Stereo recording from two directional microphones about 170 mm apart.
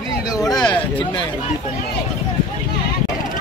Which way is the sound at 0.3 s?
20° left (ahead or behind).